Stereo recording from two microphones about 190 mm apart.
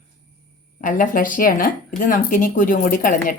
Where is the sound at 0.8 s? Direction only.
45° left (ahead or behind).